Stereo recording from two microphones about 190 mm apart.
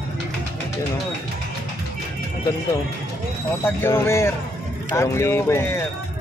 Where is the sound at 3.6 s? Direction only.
10° left (ahead or behind).